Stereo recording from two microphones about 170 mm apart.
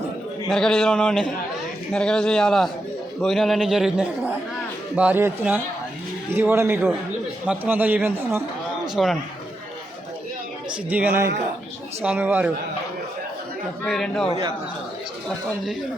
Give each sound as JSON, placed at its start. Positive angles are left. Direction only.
{"t": 0.5, "sound": "a man's voice", "side_deg": 5}
{"t": 10.8, "sound": "a man's voice", "side_deg": -10}
{"t": 13.8, "sound": "a man's voice", "side_deg": 5}